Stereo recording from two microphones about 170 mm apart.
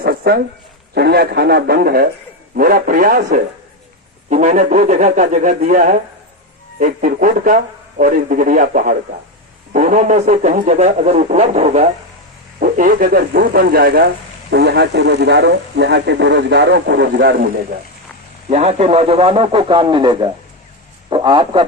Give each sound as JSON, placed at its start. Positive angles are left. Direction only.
{"t": 0.0, "sound": "a sound", "side_deg": -65}
{"t": 0.9, "sound": "a man's voice", "side_deg": -70}
{"t": 14.5, "sound": "speech", "side_deg": -80}
{"t": 18.4, "sound": "a man's voice", "side_deg": -40}